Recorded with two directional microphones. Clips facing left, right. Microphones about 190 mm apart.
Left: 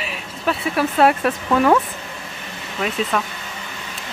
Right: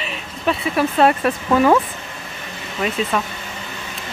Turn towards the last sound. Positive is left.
turn(degrees=0)  # may be behind; listen again after turning